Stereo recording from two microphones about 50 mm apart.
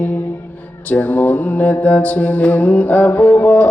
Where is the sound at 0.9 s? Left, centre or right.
Left.